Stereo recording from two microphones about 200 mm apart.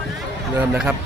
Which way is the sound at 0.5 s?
10° right (ahead or behind).